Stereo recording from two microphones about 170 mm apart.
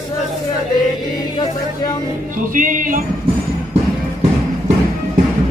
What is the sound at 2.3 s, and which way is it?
Music, 50° right (ahead or behind).